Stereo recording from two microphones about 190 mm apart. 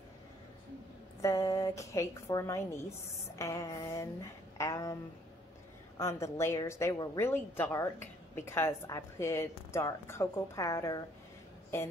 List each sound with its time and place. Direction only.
1.2 s a woman's voice: 15° left (ahead or behind)
5.9 s a woman's voice: 15° left (ahead or behind)